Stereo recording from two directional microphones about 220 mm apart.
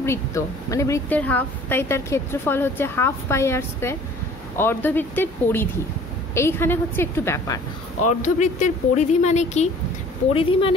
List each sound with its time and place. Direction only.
0.0 s a woman's voice: 15° left (ahead or behind)
8.1 s speech: 35° left (ahead or behind)